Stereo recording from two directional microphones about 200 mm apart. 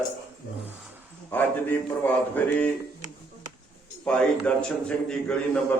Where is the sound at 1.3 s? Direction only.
10° left (ahead or behind).